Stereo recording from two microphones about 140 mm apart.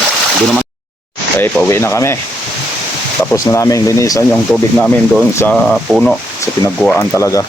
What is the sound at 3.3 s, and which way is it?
Speech, 20° left (ahead or behind).